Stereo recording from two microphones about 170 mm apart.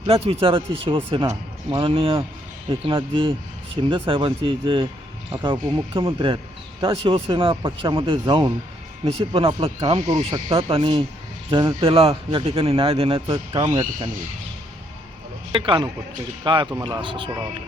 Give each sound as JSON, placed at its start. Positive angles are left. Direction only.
{"t": 0.0, "sound": "a man's voice", "side_deg": -35}
{"t": 15.5, "sound": "speech", "side_deg": -30}